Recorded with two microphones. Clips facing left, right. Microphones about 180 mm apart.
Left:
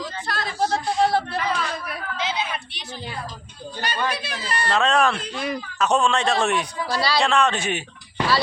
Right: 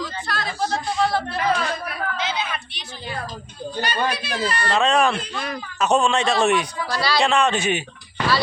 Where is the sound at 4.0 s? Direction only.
35° right (ahead or behind).